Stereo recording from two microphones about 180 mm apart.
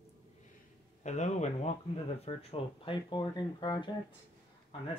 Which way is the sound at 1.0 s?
40° left (ahead or behind).